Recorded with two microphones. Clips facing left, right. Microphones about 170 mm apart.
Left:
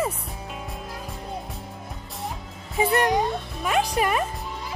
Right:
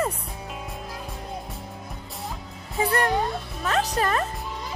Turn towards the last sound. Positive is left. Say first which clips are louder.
# left 1 dB
turn(degrees=10)  # may be behind; listen again after turning